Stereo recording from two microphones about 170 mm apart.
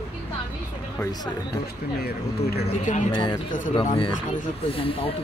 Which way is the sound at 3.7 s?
30° left (ahead or behind).